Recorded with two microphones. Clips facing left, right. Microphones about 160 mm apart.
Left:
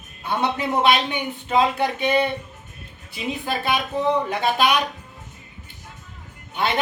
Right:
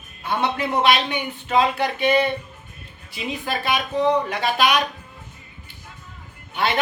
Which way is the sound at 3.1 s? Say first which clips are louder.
Left 1 dB; 25° left (ahead or behind).